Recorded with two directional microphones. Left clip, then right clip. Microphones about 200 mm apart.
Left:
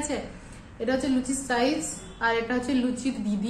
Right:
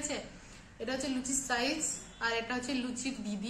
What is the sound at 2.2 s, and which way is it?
Speech, 5° right (ahead or behind).